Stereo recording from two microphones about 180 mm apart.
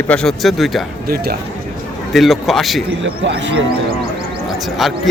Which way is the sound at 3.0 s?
85° right.